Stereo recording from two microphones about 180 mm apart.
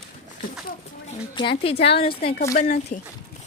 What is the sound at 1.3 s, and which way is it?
A woman's voice, 30° left (ahead or behind).